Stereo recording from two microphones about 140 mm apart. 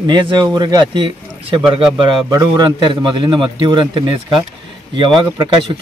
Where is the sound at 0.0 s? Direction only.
30° right (ahead or behind).